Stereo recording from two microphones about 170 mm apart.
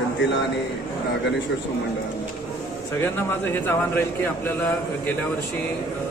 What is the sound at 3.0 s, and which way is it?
Speech, 15° left (ahead or behind).